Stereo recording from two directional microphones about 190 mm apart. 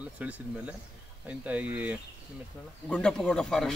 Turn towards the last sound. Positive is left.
turn(degrees=5)  # may be behind; listen again after turning